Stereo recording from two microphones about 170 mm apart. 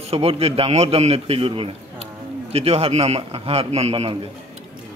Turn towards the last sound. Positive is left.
turn(degrees=-35)  # may be behind; listen again after turning